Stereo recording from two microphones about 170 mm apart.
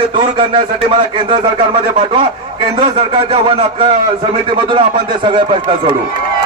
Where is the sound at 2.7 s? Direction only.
35° right (ahead or behind).